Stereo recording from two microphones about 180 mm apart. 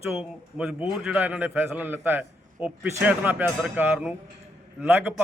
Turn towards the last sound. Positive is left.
turn(degrees=-10)  # may be behind; listen again after turning